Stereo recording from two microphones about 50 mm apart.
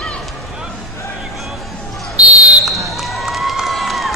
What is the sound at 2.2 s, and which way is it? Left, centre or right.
Fire alarm, right.